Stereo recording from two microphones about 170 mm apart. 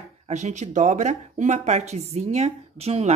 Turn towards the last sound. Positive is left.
turn(degrees=-40)  # may be behind; listen again after turning